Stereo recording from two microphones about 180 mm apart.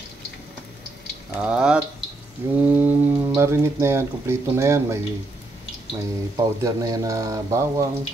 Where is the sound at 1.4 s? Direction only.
5° right (ahead or behind).